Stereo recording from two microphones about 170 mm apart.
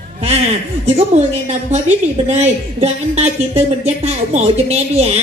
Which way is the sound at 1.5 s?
40° right (ahead or behind).